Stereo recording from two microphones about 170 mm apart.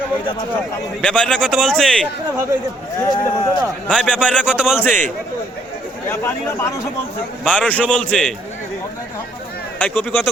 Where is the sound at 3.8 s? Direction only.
5° left (ahead or behind).